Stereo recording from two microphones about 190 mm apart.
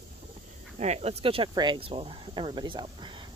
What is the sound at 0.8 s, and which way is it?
Speech, 35° right (ahead or behind).